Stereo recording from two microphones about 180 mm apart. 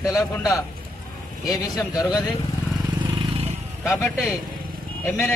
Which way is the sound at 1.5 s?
20° left (ahead or behind).